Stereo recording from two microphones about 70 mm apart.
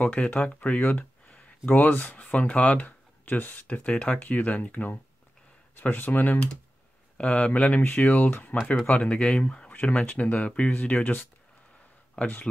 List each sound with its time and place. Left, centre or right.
0.0 s speech: left